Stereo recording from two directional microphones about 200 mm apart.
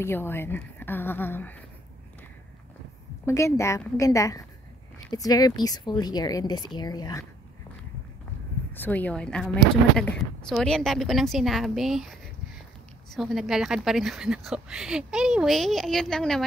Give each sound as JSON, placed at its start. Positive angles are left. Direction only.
{"t": 0.0, "sound": "a woman's voice", "side_deg": 10}
{"t": 3.3, "sound": "a woman's voice", "side_deg": 15}
{"t": 8.7, "sound": "a woman's voice", "side_deg": 10}